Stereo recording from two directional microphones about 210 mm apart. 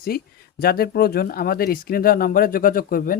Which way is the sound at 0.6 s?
45° left (ahead or behind).